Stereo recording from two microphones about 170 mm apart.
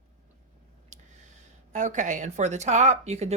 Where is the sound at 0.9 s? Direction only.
45° right (ahead or behind).